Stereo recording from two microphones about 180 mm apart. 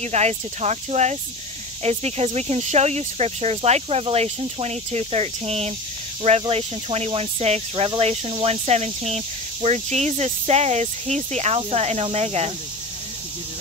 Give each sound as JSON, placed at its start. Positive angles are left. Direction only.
{"t": 0.0, "sound": "speech", "side_deg": -40}